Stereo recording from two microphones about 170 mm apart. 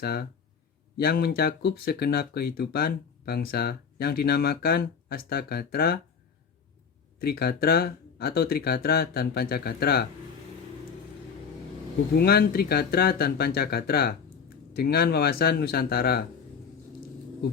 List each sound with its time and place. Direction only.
0.0 s speech: 65° left (ahead or behind)
7.2 s speech: 65° left (ahead or behind)
12.1 s speech: 65° left (ahead or behind)